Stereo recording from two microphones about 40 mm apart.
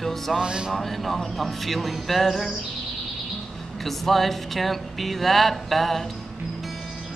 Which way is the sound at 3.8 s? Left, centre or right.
Centre.